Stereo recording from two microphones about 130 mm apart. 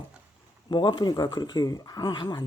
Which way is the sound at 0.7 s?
35° left (ahead or behind).